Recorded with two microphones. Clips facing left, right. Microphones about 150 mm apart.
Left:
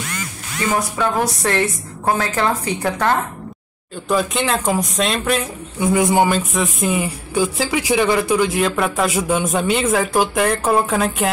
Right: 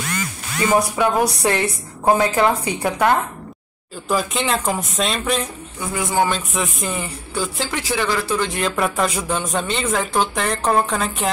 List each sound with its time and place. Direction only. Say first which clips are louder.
0.7 s a woman's voice: right 2 dB; 15° right (ahead or behind)
4.1 s speech: left 2 dB; centre (ahead or behind)
5.8 s speech: left 5 dB; 20° left (ahead or behind)
6.3 s speech: left 4 dB; centre (ahead or behind); by 8.5 s 15° left (ahead or behind)
8.5 s speech: left 3 dB; centre (ahead or behind)